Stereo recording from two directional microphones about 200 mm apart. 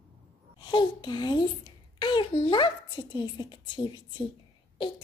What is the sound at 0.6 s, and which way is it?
A child's voice, 25° left (ahead or behind).